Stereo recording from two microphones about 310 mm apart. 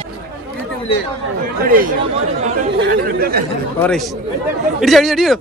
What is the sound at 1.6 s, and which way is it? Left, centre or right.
Speech, right.